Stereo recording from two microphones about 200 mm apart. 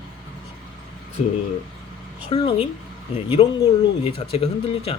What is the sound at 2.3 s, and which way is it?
Speech, 25° left (ahead or behind).